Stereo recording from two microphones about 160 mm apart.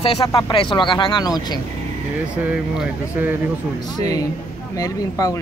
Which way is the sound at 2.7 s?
10° right (ahead or behind).